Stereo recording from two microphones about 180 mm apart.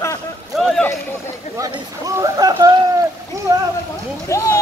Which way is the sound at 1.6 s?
20° right (ahead or behind).